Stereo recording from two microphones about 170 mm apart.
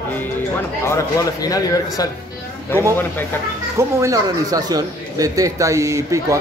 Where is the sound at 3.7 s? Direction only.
20° right (ahead or behind).